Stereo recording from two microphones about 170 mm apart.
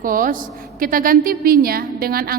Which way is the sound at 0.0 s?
55° right (ahead or behind).